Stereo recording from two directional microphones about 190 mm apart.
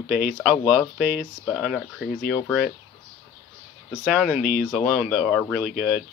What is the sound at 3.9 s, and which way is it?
Speech, centre (ahead or behind).